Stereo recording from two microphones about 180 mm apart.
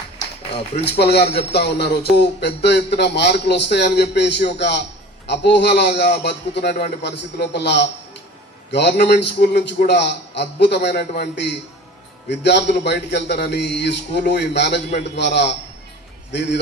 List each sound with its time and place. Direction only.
0.9 s speech: 65° left (ahead or behind)